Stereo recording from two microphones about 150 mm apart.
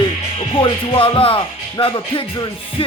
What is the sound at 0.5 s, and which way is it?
Speech, 35° left (ahead or behind).